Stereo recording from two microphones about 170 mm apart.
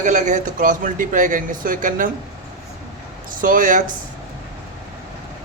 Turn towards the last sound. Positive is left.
turn(degrees=-50)  # may be behind; listen again after turning